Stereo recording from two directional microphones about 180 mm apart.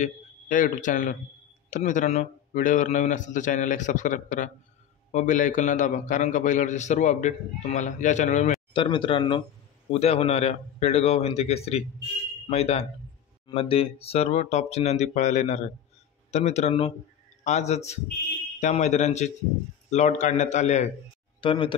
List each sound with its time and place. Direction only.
0.0 s a man's voice: 45° left (ahead or behind)
8.7 s speech: 30° left (ahead or behind)
21.4 s speech: 30° left (ahead or behind)